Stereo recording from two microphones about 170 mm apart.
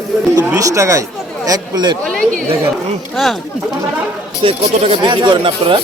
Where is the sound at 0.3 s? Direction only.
20° right (ahead or behind).